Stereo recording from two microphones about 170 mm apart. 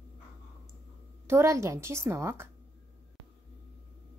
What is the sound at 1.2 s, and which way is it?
A woman's voice, 15° right (ahead or behind).